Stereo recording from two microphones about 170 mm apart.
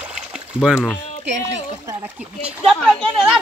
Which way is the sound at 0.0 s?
5° right (ahead or behind).